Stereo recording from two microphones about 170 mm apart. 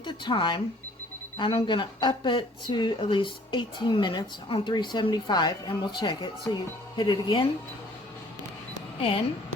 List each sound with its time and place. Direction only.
0.0 s speech: 30° left (ahead or behind)
9.0 s speech: 35° left (ahead or behind)